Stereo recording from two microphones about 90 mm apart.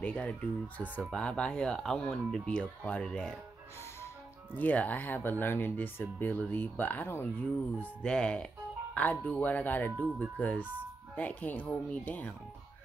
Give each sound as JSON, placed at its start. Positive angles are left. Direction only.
{"t": 0.0, "sound": "speech", "side_deg": 15}
{"t": 4.6, "sound": "speech", "side_deg": 20}
{"t": 7.8, "sound": "speech", "side_deg": 10}